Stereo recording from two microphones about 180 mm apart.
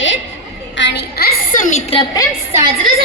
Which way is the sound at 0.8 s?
80° left.